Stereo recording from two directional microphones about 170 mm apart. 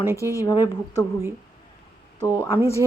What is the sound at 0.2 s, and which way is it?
Speech, 20° left (ahead or behind).